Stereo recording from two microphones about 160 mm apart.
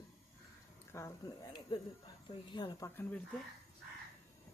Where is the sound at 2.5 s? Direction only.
30° left (ahead or behind).